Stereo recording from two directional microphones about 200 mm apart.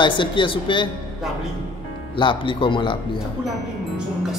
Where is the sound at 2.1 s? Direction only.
25° left (ahead or behind).